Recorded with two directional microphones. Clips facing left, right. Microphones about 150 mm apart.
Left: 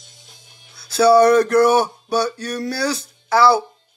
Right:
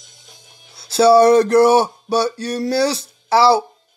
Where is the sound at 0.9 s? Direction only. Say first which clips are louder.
Right 2 dB; 25° right (ahead or behind).